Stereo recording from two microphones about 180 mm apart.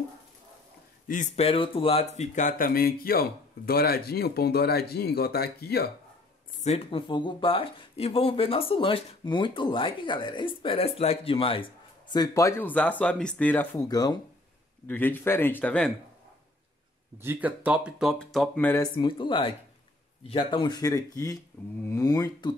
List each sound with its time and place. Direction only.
1.0 s speech: 45° left (ahead or behind)
6.6 s a man's voice: 35° left (ahead or behind); by 13.7 s 10° left (ahead or behind)
13.7 s speech: 20° left (ahead or behind)
14.9 s a man's voice: 10° left (ahead or behind)
17.2 s speech: 10° right (ahead or behind)
18.7 s speech: 25° left (ahead or behind)